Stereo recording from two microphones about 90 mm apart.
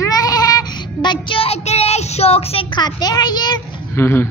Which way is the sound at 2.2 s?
90° left.